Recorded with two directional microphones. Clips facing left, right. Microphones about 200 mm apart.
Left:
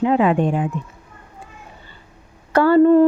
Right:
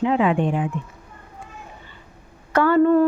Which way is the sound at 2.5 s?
35° left (ahead or behind).